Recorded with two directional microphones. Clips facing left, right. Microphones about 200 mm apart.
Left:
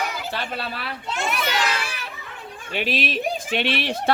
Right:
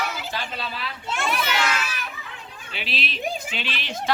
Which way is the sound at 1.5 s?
35° left (ahead or behind).